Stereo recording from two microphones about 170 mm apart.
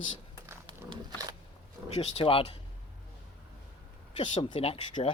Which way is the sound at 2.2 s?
30° left (ahead or behind).